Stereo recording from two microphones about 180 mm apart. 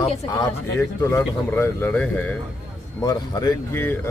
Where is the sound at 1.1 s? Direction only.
10° left (ahead or behind).